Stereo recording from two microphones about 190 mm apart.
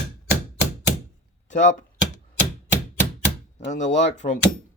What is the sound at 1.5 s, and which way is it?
Speech, 40° left (ahead or behind).